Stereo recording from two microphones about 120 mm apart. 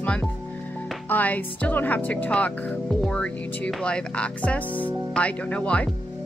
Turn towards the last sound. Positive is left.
turn(degrees=10)  # may be behind; listen again after turning